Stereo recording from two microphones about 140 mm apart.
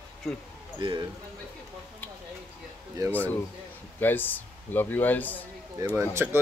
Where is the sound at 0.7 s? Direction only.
35° right (ahead or behind).